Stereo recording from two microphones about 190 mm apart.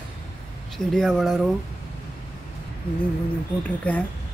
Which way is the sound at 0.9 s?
Centre (ahead or behind).